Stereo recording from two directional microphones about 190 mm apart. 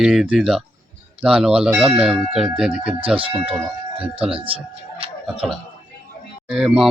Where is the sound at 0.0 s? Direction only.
Centre (ahead or behind).